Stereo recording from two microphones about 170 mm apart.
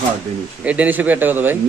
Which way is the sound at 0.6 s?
5° right (ahead or behind).